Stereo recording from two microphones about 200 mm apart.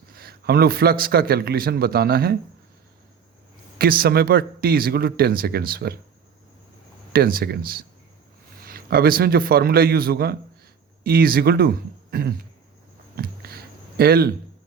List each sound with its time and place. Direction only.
0.1 s a man's voice: 50° right (ahead or behind)
3.8 s a man's voice: 50° right (ahead or behind)
7.1 s a man's voice: 50° right (ahead or behind)
13.1 s a sound: 50° right (ahead or behind)